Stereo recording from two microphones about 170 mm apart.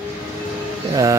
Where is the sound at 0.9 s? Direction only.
20° right (ahead or behind).